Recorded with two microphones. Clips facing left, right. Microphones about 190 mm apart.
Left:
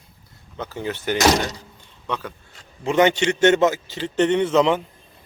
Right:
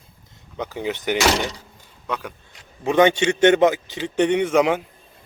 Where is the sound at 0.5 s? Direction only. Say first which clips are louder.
Right 2 dB; 15° right (ahead or behind).